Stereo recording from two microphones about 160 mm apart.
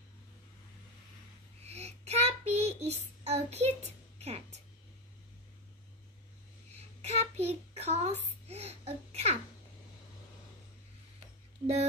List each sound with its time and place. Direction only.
1.6 s child singing: 40° right (ahead or behind)
4.2 s music: 40° right (ahead or behind)
7.0 s child singing: 40° right (ahead or behind)
11.6 s a sound: 40° right (ahead or behind)